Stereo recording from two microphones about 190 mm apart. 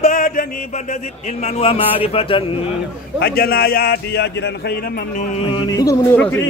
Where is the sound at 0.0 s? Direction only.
45° left (ahead or behind).